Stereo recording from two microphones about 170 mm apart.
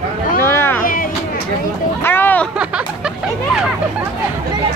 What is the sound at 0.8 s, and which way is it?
Music, 55° left (ahead or behind).